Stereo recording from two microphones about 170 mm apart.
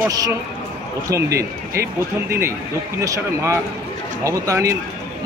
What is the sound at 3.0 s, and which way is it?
A man's voice, 15° right (ahead or behind).